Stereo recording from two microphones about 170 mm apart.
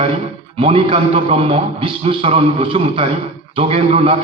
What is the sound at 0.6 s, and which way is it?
A man's voice, 35° right (ahead or behind).